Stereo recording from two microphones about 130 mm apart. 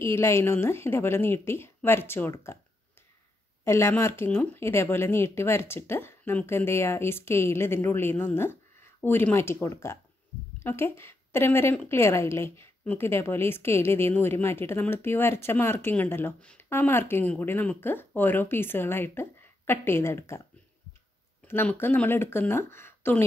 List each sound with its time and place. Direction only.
0.0 s speech: 20° left (ahead or behind)
3.6 s a woman's voice: 20° left (ahead or behind)
21.5 s a woman's voice: 15° left (ahead or behind)